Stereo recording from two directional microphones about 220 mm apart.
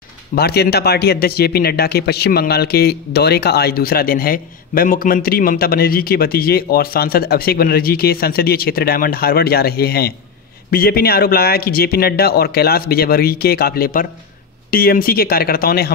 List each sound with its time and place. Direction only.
0.4 s speech: 45° left (ahead or behind)